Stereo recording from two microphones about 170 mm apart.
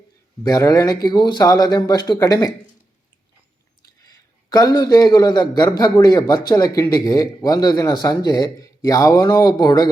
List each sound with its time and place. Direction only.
0.4 s a man's voice: 20° left (ahead or behind)
4.0 s a man's voice: 20° left (ahead or behind)